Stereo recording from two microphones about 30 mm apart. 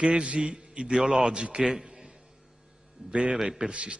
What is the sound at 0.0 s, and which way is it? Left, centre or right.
A man's voice, right.